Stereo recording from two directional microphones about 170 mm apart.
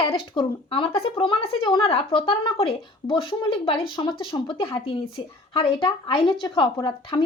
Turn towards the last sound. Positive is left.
turn(degrees=25)  # may be behind; listen again after turning